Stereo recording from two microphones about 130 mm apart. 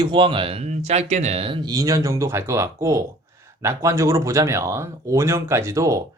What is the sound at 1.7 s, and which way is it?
Speech, 25° right (ahead or behind).